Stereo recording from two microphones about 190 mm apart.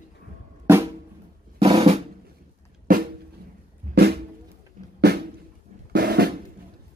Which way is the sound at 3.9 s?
40° right (ahead or behind).